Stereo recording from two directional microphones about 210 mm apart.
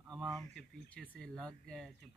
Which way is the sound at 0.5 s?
5° left (ahead or behind).